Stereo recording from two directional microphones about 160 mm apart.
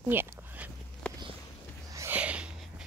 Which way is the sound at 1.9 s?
20° right (ahead or behind).